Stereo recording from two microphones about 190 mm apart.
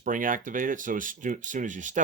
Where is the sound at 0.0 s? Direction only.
45° right (ahead or behind).